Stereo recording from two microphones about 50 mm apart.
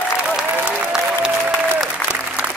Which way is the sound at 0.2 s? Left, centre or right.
Centre.